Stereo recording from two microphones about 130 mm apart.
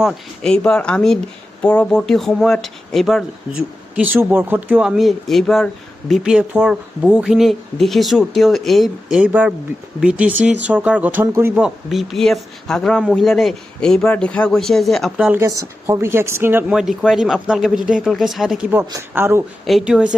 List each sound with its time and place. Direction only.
0.0 s speech: 5° left (ahead or behind)
3.9 s speech: 15° right (ahead or behind)
11.6 s speech: centre (ahead or behind)
15.2 s speech: 15° right (ahead or behind)
16.7 s speech: 5° right (ahead or behind)
19.1 s speech: 20° right (ahead or behind)
19.6 s speech: centre (ahead or behind)